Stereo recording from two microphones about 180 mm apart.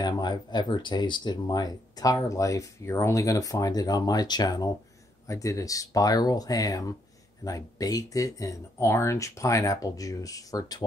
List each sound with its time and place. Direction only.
0.0 s speech: 25° left (ahead or behind)